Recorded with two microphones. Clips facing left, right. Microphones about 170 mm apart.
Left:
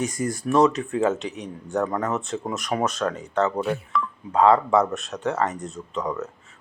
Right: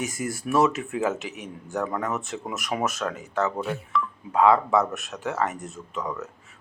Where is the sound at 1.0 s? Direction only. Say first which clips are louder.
Left 4 dB; centre (ahead or behind).